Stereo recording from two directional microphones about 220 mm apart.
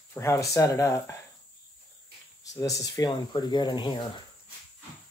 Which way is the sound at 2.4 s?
15° left (ahead or behind).